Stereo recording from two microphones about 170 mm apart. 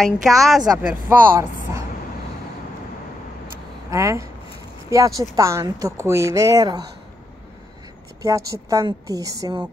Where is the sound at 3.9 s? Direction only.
15° right (ahead or behind).